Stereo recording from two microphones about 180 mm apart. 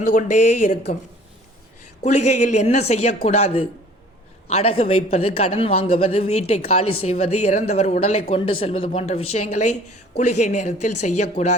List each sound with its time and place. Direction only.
0.1 s speech: 40° left (ahead or behind)
2.0 s a man's voice: 40° left (ahead or behind)